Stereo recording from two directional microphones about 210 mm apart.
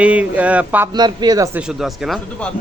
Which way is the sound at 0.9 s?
20° right (ahead or behind).